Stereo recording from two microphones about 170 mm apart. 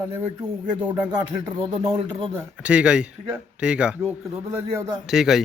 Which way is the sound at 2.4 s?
10° right (ahead or behind).